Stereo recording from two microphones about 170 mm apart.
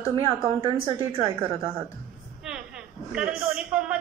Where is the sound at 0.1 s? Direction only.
35° right (ahead or behind).